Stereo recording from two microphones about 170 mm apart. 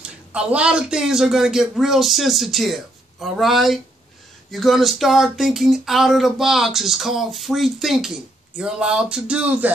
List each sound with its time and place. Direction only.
0.0 s speech: 5° right (ahead or behind)